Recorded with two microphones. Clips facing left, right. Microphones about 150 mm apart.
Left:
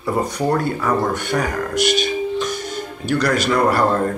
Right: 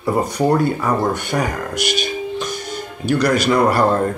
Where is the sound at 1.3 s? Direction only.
5° right (ahead or behind).